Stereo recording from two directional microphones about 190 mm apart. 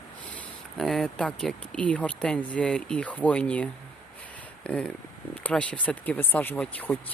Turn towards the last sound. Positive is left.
turn(degrees=10)  # may be behind; listen again after turning